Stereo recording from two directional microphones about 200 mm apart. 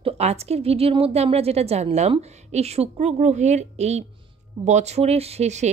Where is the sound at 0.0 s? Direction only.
30° right (ahead or behind).